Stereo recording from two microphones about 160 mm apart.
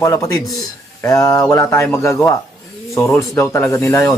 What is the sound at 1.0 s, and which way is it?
Speech, 20° left (ahead or behind).